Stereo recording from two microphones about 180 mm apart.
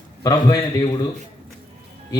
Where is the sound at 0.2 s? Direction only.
20° left (ahead or behind).